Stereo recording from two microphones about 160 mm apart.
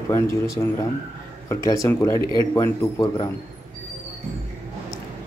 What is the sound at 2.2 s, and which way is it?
Speech, 30° right (ahead or behind).